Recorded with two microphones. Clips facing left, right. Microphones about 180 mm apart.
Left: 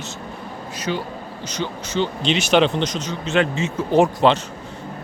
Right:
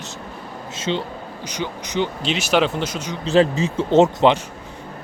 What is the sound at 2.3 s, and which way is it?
Speech, 5° right (ahead or behind).